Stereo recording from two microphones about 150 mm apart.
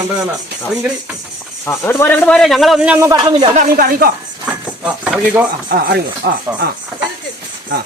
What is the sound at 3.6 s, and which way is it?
Speech, 75° right (ahead or behind).